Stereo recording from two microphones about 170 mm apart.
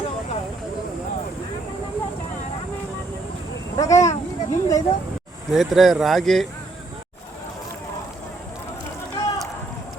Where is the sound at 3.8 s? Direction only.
20° left (ahead or behind).